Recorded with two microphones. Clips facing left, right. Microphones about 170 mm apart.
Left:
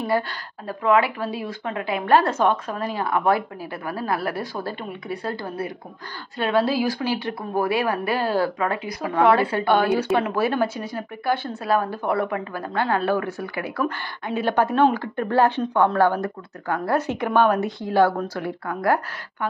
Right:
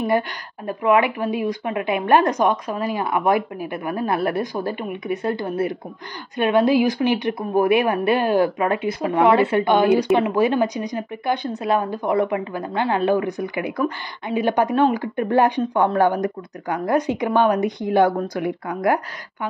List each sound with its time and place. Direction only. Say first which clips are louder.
0.7 s a woman's voice: right 2 dB; 20° right (ahead or behind)